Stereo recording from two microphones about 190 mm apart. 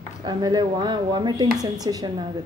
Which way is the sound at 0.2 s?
20° right (ahead or behind).